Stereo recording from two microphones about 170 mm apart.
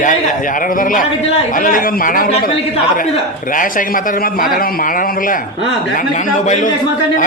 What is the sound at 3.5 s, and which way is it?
A man's voice, 50° left (ahead or behind).